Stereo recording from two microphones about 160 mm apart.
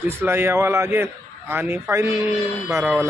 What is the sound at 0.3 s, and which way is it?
Speech, 15° right (ahead or behind).